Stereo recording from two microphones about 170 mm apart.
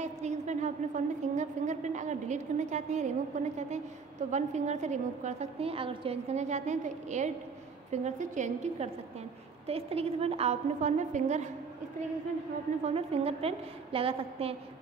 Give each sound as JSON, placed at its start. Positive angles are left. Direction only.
{"t": 0.0, "sound": "a woman's voice", "side_deg": -45}
{"t": 12.8, "sound": "a woman's voice", "side_deg": -35}